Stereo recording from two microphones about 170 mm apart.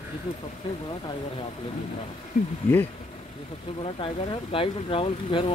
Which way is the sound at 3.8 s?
30° left (ahead or behind).